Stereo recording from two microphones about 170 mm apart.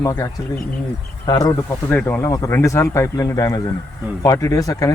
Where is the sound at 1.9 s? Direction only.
10° left (ahead or behind).